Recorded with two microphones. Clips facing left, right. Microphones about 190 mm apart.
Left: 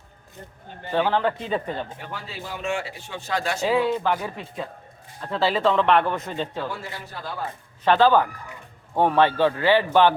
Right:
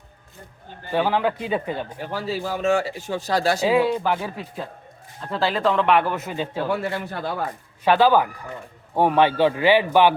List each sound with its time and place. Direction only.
0.9 s a man's voice: 10° right (ahead or behind)
2.0 s a man's voice: 40° right (ahead or behind)
3.6 s a man's voice: 15° right (ahead or behind)
5.2 s speech: centre (ahead or behind)
6.7 s a man's voice: 60° right (ahead or behind)
7.9 s a man's voice: 10° right (ahead or behind)